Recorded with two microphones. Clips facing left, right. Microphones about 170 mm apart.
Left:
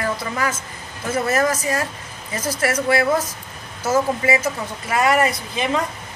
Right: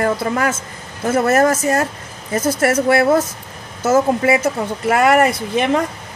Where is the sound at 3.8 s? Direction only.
55° right (ahead or behind).